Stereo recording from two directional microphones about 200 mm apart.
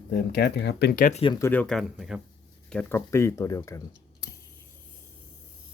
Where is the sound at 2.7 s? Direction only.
10° left (ahead or behind).